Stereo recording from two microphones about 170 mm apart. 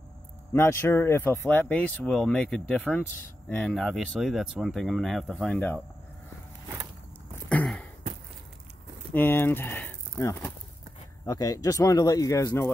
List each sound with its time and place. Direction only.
0.5 s a man's voice: 15° left (ahead or behind)
7.4 s a sound: 5° left (ahead or behind)
9.1 s speech: 10° left (ahead or behind)